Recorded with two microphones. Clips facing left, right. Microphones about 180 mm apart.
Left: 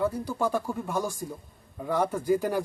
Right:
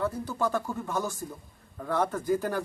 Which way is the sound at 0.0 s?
10° left (ahead or behind).